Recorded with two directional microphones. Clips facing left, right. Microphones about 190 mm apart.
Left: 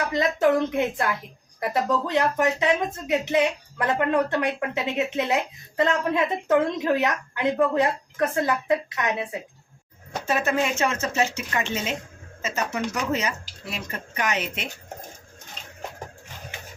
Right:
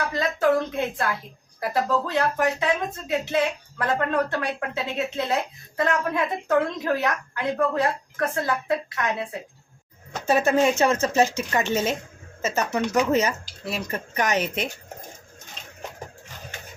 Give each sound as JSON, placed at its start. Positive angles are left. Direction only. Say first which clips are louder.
{"t": 0.1, "sound": "speech", "louder": "left 1 dB", "side_deg": 20}
{"t": 10.2, "sound": "a woman's voice", "louder": "right 5 dB", "side_deg": -35}